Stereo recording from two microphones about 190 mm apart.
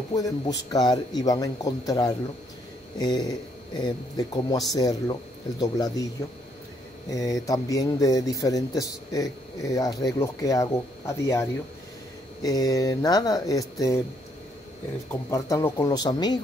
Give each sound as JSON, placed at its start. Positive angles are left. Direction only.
{"t": 0.1, "sound": "a man's voice", "side_deg": 20}
{"t": 7.1, "sound": "a man's voice", "side_deg": 20}
{"t": 12.4, "sound": "a man's voice", "side_deg": 20}
{"t": 15.0, "sound": "speech", "side_deg": 15}